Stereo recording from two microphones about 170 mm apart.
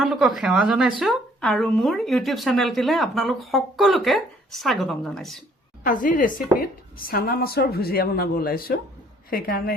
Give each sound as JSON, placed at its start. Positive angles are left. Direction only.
{"t": 0.0, "sound": "a woman's voice", "side_deg": 0}
{"t": 5.8, "sound": "a woman's voice", "side_deg": 50}